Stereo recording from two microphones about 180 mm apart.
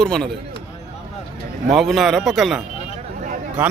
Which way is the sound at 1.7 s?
Centre (ahead or behind).